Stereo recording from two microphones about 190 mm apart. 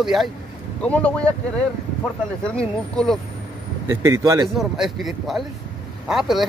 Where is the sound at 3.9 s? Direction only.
15° right (ahead or behind).